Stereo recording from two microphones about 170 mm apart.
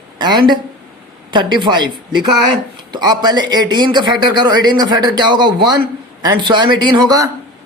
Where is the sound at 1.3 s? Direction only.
25° right (ahead or behind).